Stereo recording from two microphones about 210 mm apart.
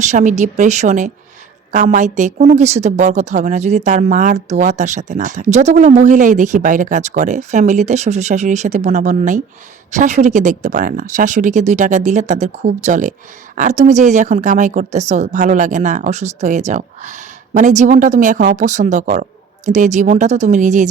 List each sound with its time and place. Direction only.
0.0 s a woman's voice: 35° right (ahead or behind)